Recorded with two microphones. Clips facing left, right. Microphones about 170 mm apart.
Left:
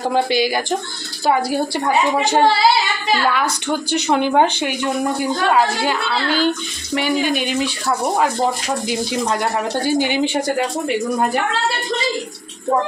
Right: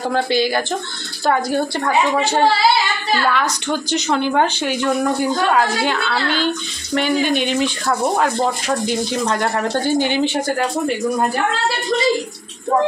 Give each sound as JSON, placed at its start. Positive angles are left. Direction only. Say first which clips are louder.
{"t": 0.1, "sound": "speech", "louder": "even", "side_deg": 15}